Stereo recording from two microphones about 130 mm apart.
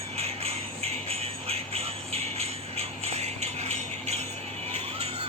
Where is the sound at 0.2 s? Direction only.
50° right (ahead or behind).